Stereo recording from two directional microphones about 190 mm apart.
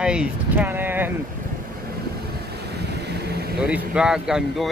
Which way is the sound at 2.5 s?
60° right (ahead or behind).